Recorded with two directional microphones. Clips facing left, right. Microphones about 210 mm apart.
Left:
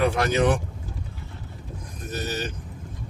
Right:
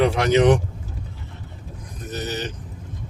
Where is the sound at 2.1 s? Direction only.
20° right (ahead or behind).